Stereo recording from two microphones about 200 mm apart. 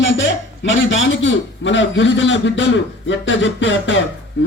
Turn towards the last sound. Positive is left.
turn(degrees=65)  # may be behind; listen again after turning